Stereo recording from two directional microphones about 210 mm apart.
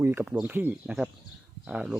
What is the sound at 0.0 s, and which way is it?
Speech, 10° right (ahead or behind).